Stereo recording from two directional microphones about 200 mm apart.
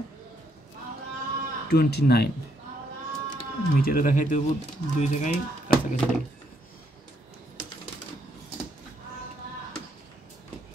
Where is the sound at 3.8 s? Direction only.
45° left (ahead or behind).